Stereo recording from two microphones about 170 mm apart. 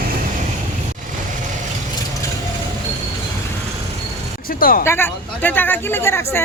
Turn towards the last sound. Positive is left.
turn(degrees=15)  # may be behind; listen again after turning